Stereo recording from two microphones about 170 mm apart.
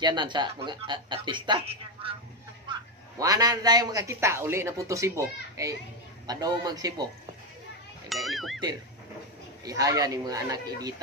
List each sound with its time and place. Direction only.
0.0 s a man's voice: 25° right (ahead or behind)
8.1 s speech: centre (ahead or behind)
9.7 s a man's voice: 20° right (ahead or behind)